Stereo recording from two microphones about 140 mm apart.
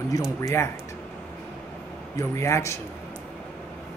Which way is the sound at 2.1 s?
20° left (ahead or behind).